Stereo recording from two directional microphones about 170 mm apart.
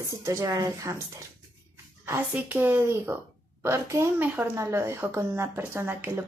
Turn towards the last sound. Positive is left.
turn(degrees=-15)  # may be behind; listen again after turning